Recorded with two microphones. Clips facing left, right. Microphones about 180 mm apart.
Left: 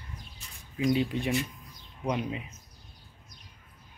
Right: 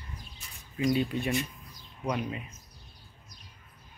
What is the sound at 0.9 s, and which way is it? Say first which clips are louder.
Speech: left 1 dB; 15° left (ahead or behind).